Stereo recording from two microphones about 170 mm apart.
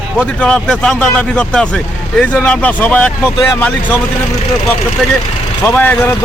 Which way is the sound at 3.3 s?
20° left (ahead or behind).